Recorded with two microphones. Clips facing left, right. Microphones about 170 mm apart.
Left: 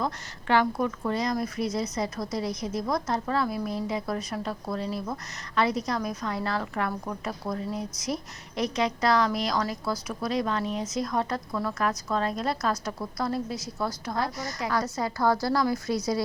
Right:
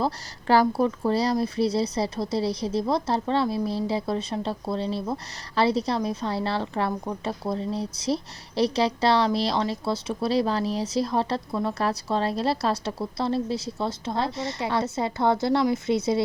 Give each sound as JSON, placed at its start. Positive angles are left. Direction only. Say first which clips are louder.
{"t": 0.0, "sound": "speech", "louder": "right 4 dB", "side_deg": -35}